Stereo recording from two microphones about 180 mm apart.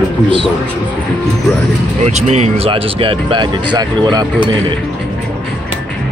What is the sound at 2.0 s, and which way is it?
Speech, 35° right (ahead or behind).